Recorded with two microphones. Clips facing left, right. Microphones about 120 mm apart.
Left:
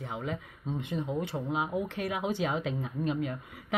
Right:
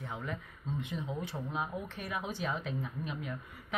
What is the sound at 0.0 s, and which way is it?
A woman's voice, 65° left (ahead or behind).